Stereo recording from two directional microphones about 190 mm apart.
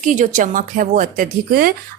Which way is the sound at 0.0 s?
40° right (ahead or behind).